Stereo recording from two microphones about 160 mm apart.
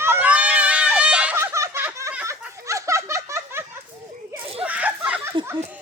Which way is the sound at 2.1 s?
15° right (ahead or behind).